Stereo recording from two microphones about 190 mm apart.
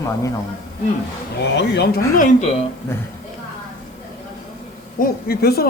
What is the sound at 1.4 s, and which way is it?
Speech, 60° left (ahead or behind).